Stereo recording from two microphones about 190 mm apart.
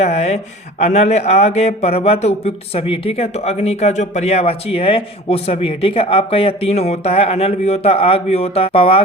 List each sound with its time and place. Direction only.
0.0 s speech: 35° left (ahead or behind)